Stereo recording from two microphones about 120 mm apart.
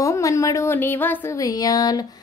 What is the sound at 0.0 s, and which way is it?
A woman's voice, 25° left (ahead or behind).